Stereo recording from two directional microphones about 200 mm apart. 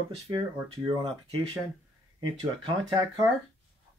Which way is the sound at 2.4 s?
20° right (ahead or behind).